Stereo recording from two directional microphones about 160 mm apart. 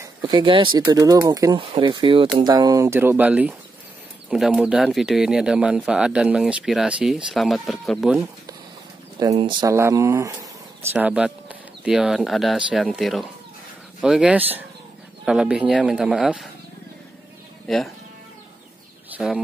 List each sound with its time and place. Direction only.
0.3 s speech: 30° right (ahead or behind); by 8.2 s centre (ahead or behind)
9.3 s speech: 30° right (ahead or behind); by 16.4 s 5° right (ahead or behind)
17.6 s speech: centre (ahead or behind)
19.0 s speech: 5° right (ahead or behind)